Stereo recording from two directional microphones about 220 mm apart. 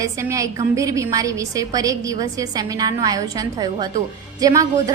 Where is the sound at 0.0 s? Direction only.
15° right (ahead or behind).